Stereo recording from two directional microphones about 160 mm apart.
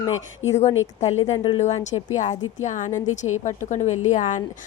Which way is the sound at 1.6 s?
45° left (ahead or behind).